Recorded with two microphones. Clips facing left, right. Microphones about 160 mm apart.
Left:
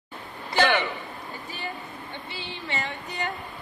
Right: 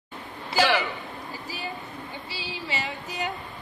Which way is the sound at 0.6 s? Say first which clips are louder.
Even; 5° right (ahead or behind).